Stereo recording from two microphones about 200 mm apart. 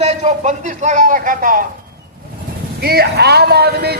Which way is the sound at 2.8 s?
50° right (ahead or behind).